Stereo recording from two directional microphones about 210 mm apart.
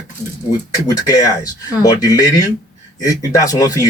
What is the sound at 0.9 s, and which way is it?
Speech, 15° left (ahead or behind).